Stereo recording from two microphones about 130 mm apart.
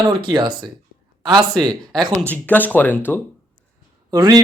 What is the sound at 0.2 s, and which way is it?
Speech, 35° right (ahead or behind).